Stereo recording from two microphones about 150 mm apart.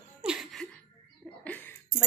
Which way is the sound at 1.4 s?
10° left (ahead or behind).